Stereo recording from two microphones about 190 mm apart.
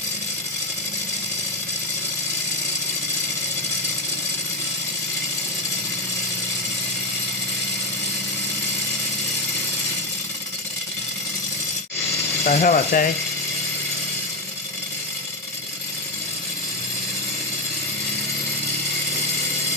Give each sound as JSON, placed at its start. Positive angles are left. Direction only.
{"t": 12.4, "sound": "speech", "side_deg": 50}